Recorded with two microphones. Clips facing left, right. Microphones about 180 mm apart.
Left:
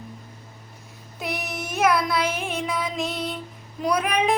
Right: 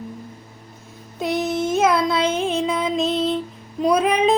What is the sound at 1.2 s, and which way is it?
Music, 20° right (ahead or behind).